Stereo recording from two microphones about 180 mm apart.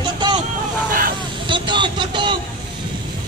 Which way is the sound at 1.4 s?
25° right (ahead or behind).